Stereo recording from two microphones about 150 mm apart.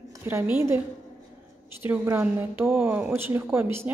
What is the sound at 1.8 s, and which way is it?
A woman's voice, 15° right (ahead or behind).